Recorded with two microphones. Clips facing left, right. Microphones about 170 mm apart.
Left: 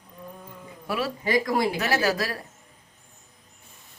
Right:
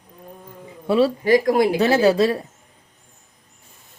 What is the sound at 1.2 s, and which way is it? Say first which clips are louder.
Speech: right 4 dB; 50° right (ahead or behind).